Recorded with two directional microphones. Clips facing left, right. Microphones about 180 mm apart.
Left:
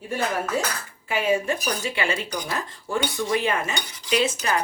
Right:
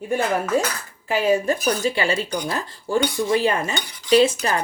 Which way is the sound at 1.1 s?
40° right (ahead or behind).